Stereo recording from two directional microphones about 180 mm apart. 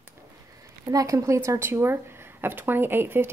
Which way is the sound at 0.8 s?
20° right (ahead or behind).